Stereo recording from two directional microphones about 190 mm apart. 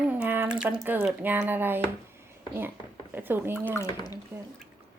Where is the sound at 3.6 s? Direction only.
15° left (ahead or behind).